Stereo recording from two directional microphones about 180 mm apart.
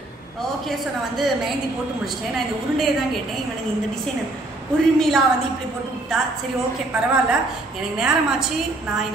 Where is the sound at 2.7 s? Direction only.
Centre (ahead or behind).